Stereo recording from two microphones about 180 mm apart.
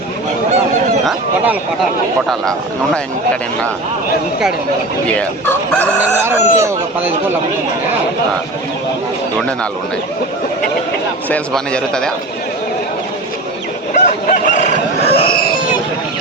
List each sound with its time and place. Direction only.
2.4 s a man's voice: 5° left (ahead or behind)
5.0 s fowl: 5° left (ahead or behind)
6.0 s speech: 15° right (ahead or behind)
11.3 s a man's voice: 5° left (ahead or behind)
13.9 s chicken: 45° left (ahead or behind)